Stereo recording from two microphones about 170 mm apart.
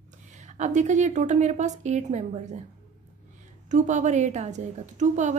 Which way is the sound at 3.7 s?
45° right (ahead or behind).